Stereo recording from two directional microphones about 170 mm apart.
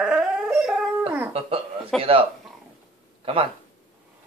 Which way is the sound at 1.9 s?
5° left (ahead or behind).